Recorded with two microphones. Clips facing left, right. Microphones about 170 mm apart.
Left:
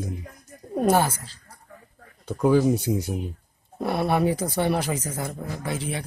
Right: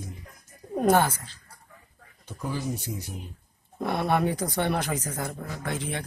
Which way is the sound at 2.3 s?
70° left (ahead or behind).